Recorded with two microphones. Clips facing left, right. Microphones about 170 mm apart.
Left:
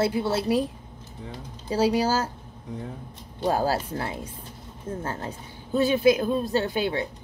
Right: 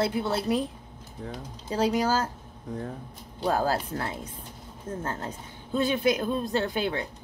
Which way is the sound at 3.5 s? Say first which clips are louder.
Left 2 dB; 10° left (ahead or behind).